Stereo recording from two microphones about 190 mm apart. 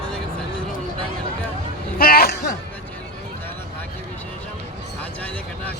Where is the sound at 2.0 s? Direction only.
50° left (ahead or behind).